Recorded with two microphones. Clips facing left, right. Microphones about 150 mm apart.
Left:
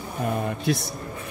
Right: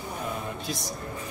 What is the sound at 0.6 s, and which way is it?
Speech, 60° left (ahead or behind).